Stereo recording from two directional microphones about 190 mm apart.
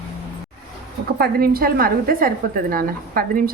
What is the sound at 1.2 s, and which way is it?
A woman's voice, 50° right (ahead or behind).